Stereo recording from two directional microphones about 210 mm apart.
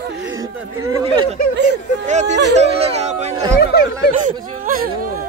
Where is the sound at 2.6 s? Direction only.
30° right (ahead or behind).